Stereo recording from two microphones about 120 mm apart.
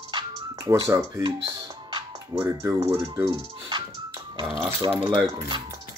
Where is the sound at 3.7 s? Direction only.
40° right (ahead or behind).